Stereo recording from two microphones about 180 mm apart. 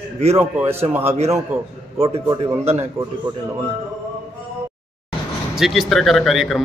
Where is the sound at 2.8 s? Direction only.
15° right (ahead or behind).